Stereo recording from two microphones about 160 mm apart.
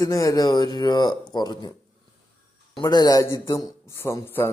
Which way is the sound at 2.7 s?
25° left (ahead or behind).